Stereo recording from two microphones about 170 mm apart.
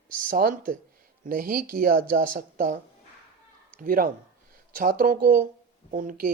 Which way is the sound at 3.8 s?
55° right (ahead or behind).